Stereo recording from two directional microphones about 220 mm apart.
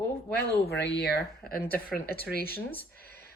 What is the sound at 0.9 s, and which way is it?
Speech, 45° left (ahead or behind).